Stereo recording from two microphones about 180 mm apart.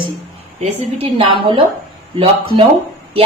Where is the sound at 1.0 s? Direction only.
30° right (ahead or behind).